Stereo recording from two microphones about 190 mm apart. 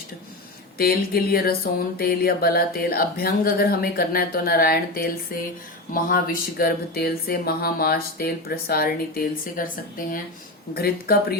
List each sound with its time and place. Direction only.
0.8 s speech: 50° left (ahead or behind)